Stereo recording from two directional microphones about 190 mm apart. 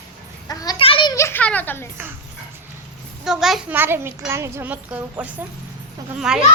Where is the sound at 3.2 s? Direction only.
Centre (ahead or behind).